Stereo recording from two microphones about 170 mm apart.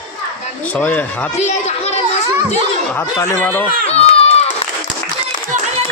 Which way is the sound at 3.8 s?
35° left (ahead or behind).